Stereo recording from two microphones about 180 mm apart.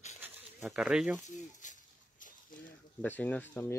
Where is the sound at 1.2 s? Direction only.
45° left (ahead or behind).